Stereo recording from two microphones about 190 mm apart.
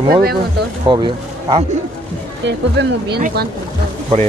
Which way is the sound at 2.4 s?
65° right (ahead or behind).